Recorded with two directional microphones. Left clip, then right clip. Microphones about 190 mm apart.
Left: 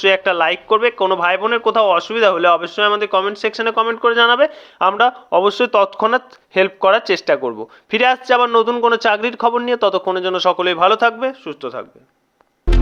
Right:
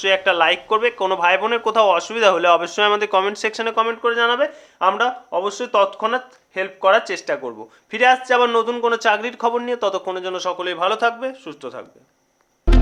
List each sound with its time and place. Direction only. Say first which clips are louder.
0.0 s speech: left 2 dB; 25° left (ahead or behind)
4.0 s speech: left 8 dB; 35° left (ahead or behind)
8.4 s speech: left 4 dB; 20° left (ahead or behind)